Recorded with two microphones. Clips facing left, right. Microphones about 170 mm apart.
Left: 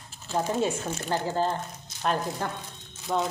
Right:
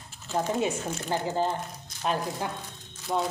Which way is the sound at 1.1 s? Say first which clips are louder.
Left 1 dB; 15° right (ahead or behind).